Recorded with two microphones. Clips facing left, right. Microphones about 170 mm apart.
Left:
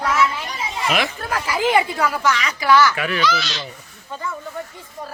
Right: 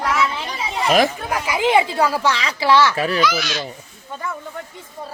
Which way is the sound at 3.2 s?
10° right (ahead or behind).